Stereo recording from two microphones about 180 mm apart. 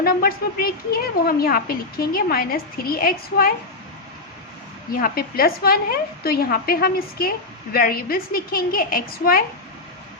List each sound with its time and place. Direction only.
0.0 s a woman's voice: 55° left (ahead or behind)
4.9 s a woman's voice: 55° left (ahead or behind)